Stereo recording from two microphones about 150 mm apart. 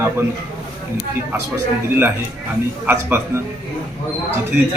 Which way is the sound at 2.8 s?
15° right (ahead or behind).